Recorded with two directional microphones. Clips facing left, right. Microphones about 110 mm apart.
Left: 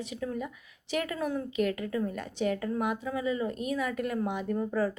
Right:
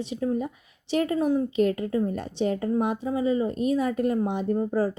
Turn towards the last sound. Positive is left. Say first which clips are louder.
# right 5 dB
turn(degrees=-30)  # may be behind; listen again after turning